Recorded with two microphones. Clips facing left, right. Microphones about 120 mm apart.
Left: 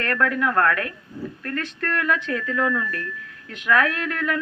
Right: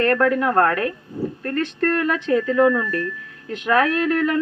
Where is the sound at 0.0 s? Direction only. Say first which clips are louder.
Right 5 dB; 35° right (ahead or behind).